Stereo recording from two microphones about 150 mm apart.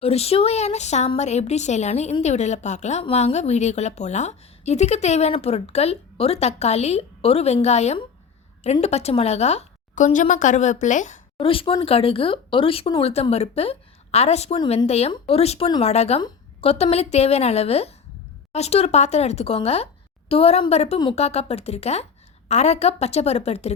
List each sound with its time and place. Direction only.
0.0 s speech: 40° left (ahead or behind)
11.3 s speech: 35° left (ahead or behind)